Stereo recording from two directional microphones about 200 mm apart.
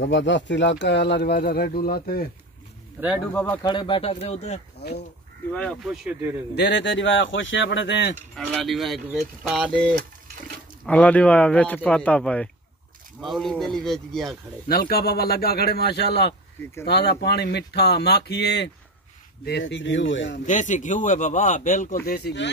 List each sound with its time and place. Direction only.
0.0 s speech: 65° left (ahead or behind)
3.0 s speech: 10° right (ahead or behind)
3.6 s speech: 25° left (ahead or behind)
4.7 s speech: 55° left (ahead or behind)
5.5 s mechanisms: 5° left (ahead or behind)
6.5 s speech: 60° left (ahead or behind)
8.4 s mechanisms: 5° left (ahead or behind)
10.9 s speech: 5° left (ahead or behind)
13.2 s mechanisms: centre (ahead or behind)
14.7 s a man's voice: 50° left (ahead or behind); by 20.4 s 65° left (ahead or behind)
20.4 s speech: 40° left (ahead or behind)
22.0 s a man's voice: 50° left (ahead or behind)